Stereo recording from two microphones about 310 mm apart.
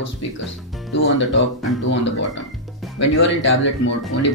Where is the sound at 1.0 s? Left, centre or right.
Left.